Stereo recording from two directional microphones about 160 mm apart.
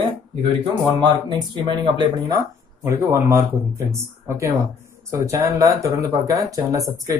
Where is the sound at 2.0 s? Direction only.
25° right (ahead or behind).